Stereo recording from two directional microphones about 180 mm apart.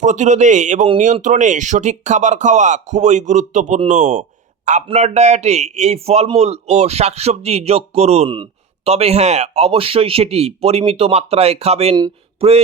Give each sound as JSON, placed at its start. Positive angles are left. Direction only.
{"t": 0.0, "sound": "a man's voice", "side_deg": -40}